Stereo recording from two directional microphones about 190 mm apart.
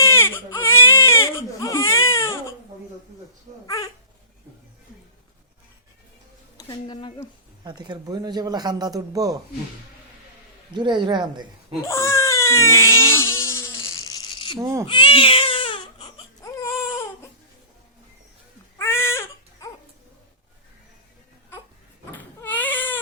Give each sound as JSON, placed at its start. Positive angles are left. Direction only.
{"t": 0.0, "sound": "baby cry", "side_deg": 15}
{"t": 3.5, "sound": "babbling", "side_deg": -35}
{"t": 6.6, "sound": "a woman's voice", "side_deg": 20}
{"t": 7.6, "sound": "speech", "side_deg": -20}
{"t": 10.8, "sound": "speech", "side_deg": -25}
{"t": 11.8, "sound": "crying", "side_deg": 15}
{"t": 14.5, "sound": "speech", "side_deg": -20}
{"t": 14.8, "sound": "baby cry", "side_deg": 25}
{"t": 18.8, "sound": "baby cry", "side_deg": 15}
{"t": 22.1, "sound": "baby cry", "side_deg": 10}